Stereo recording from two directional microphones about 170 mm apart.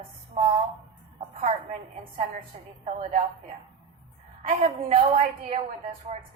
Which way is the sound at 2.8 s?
40° right (ahead or behind).